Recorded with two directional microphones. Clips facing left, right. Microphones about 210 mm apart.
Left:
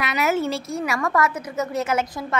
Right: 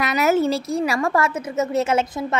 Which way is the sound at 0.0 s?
40° right (ahead or behind).